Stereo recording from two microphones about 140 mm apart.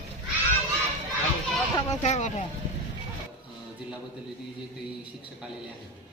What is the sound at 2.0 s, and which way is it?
Speech, 55° left (ahead or behind).